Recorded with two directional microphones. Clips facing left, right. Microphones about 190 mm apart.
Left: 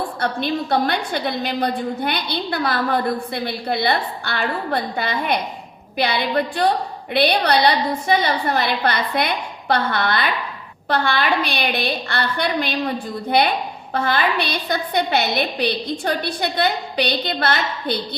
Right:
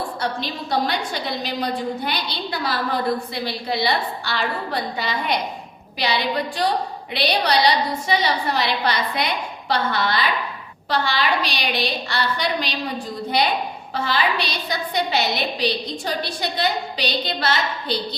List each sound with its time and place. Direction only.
0.2 s a woman's voice: 55° left (ahead or behind)